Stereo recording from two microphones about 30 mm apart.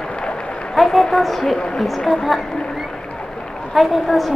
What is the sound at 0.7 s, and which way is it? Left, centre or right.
A woman's voice, centre.